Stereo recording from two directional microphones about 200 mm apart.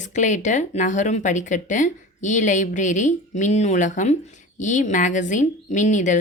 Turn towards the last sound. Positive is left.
turn(degrees=40)  # may be behind; listen again after turning